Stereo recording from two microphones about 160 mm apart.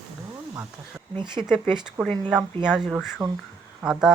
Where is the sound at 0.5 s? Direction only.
15° right (ahead or behind).